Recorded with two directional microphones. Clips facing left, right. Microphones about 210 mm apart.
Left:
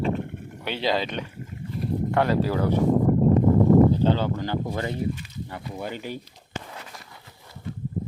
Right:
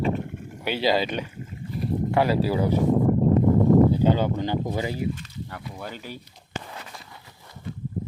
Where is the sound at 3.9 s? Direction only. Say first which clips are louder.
Right 1 dB; 10° right (ahead or behind).